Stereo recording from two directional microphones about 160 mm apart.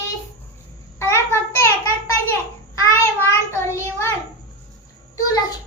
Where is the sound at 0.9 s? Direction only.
15° left (ahead or behind).